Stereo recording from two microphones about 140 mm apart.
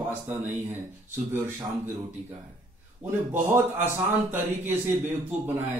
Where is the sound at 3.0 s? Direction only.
15° right (ahead or behind).